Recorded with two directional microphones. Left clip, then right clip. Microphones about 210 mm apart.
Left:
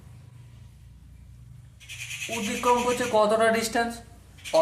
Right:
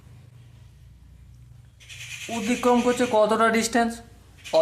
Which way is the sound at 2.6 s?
40° right (ahead or behind).